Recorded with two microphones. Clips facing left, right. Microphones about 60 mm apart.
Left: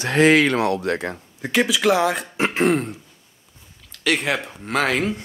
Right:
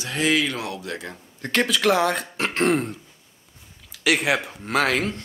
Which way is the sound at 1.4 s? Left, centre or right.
Centre.